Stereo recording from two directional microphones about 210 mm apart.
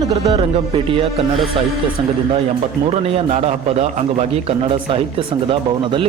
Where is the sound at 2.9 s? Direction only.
30° right (ahead or behind).